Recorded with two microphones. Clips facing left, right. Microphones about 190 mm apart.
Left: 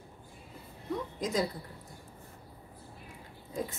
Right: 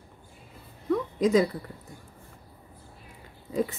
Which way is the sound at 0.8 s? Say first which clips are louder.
Right 10 dB; 65° right (ahead or behind).